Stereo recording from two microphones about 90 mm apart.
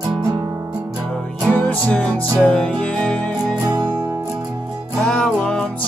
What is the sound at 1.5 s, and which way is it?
Music, 15° left (ahead or behind).